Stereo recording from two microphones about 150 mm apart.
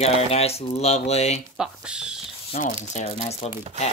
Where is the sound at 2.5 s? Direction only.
50° left (ahead or behind).